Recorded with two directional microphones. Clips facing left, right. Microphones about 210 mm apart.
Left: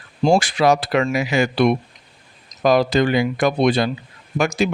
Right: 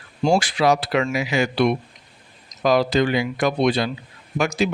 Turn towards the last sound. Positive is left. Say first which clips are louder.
# left 2 dB
turn(degrees=50)  # may be behind; listen again after turning